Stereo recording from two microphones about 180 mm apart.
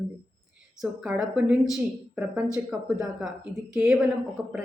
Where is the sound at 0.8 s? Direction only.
5° right (ahead or behind).